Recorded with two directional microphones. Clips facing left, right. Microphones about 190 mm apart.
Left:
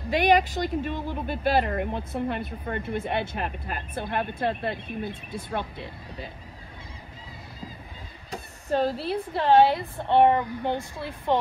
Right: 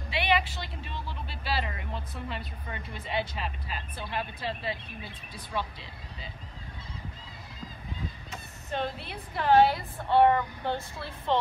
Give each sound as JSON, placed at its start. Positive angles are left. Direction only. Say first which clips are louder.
{"t": 0.1, "sound": "speech", "louder": "left 7 dB", "side_deg": 45}
{"t": 8.3, "sound": "a woman's voice", "louder": "left 14 dB", "side_deg": 35}